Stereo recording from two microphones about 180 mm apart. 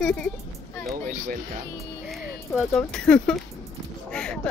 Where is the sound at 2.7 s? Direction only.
5° left (ahead or behind).